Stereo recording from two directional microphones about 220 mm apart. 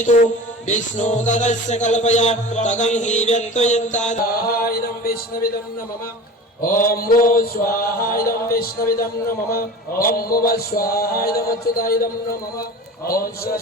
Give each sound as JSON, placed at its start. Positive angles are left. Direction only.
{"t": 0.7, "sound": "music", "side_deg": 35}
{"t": 6.6, "sound": "music", "side_deg": 40}
{"t": 13.1, "sound": "music", "side_deg": 40}